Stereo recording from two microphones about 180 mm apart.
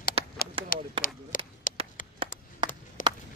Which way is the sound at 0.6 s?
30° right (ahead or behind).